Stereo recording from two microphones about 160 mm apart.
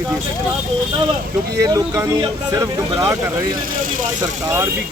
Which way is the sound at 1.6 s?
20° right (ahead or behind).